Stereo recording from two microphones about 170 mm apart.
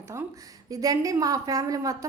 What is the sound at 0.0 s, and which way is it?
A woman's voice, 15° right (ahead or behind).